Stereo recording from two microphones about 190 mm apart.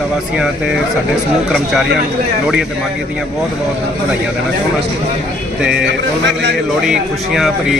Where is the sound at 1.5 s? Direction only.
Centre (ahead or behind).